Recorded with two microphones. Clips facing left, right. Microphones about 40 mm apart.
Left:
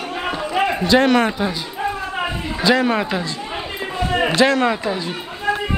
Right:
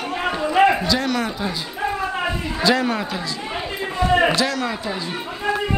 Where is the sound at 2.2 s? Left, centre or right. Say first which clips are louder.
Left 3 dB; centre.